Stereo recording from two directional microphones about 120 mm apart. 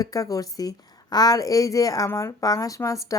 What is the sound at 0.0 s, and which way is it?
A woman's voice, 30° left (ahead or behind).